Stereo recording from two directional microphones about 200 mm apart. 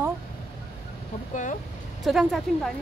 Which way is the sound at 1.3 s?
40° left (ahead or behind).